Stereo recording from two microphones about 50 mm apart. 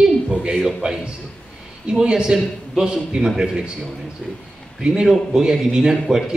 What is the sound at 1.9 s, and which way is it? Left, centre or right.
A man's voice, centre.